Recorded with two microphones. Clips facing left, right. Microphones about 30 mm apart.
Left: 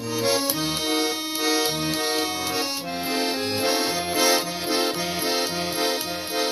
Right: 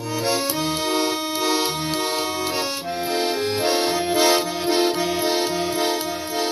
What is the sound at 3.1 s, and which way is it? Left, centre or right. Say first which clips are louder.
Accordion: right 3 dB; centre.